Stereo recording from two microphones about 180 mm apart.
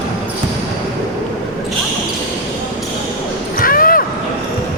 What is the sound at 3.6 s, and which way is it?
Basketball bounce, 50° left (ahead or behind).